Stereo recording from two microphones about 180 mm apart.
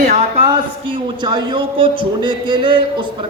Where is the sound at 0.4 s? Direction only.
25° right (ahead or behind).